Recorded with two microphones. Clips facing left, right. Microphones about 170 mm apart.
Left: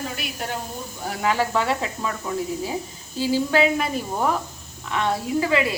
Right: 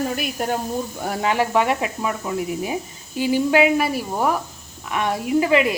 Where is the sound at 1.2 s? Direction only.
20° right (ahead or behind).